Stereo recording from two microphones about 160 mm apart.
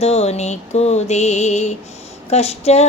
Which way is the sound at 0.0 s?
40° left (ahead or behind).